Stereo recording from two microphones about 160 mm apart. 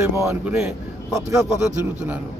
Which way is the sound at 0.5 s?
5° right (ahead or behind).